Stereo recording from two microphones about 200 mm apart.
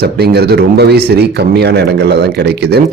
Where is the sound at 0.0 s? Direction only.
55° right (ahead or behind).